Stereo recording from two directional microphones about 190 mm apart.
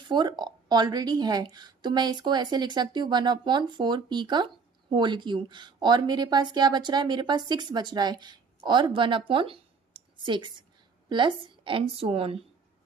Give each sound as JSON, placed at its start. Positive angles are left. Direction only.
{"t": 0.1, "sound": "a woman's voice", "side_deg": -25}